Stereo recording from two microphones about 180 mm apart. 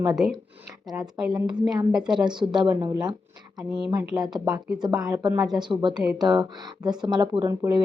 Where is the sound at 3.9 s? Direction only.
10° right (ahead or behind).